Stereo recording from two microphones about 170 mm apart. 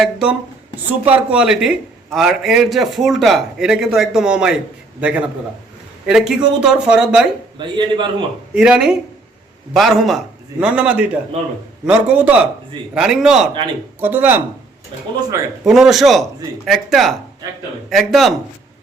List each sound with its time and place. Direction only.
0.0 s a man's voice: 5° right (ahead or behind)
7.6 s a man's voice: 30° right (ahead or behind)
8.5 s a man's voice: 5° right (ahead or behind)
15.6 s a man's voice: centre (ahead or behind)